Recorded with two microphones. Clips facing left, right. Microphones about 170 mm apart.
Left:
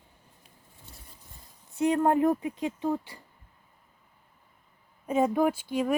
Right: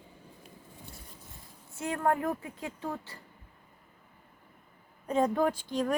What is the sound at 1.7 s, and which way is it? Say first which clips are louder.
Speech: left 6 dB; 15° left (ahead or behind).